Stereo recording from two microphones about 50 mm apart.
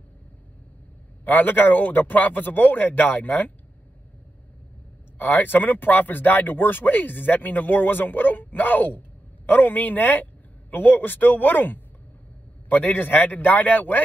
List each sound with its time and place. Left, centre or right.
1.2 s speech: left
5.2 s speech: left